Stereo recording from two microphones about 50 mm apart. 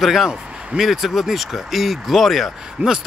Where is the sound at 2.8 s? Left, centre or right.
Right.